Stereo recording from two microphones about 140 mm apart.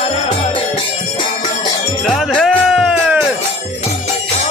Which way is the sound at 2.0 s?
Centre (ahead or behind).